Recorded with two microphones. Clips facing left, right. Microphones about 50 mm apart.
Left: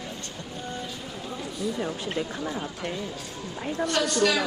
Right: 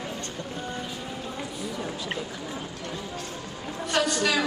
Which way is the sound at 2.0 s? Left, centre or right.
Left.